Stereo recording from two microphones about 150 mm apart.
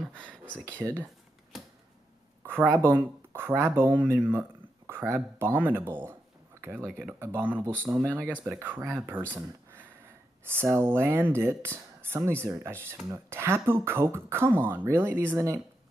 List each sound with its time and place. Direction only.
0.1 s speech: 5° left (ahead or behind)
0.7 s speech: 15° right (ahead or behind)
2.7 s speech: 15° right (ahead or behind)
9.3 s a sound: 10° right (ahead or behind)
10.4 s speech: 15° right (ahead or behind)